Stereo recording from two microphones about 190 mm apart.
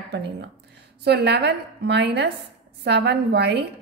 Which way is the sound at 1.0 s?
60° right (ahead or behind).